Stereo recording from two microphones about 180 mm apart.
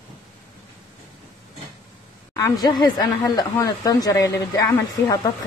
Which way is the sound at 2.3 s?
20° left (ahead or behind).